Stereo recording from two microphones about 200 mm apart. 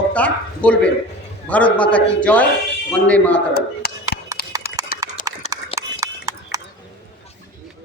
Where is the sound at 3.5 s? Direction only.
50° left (ahead or behind).